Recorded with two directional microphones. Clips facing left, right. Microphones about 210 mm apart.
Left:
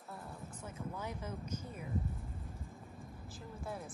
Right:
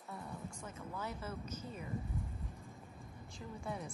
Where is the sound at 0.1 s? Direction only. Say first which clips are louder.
Right 2 dB; 5° left (ahead or behind).